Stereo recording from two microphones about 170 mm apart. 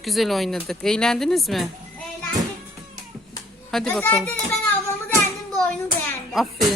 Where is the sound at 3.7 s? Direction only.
5° left (ahead or behind).